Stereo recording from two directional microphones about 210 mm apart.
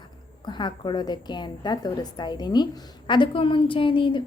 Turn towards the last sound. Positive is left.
turn(degrees=25)  # may be behind; listen again after turning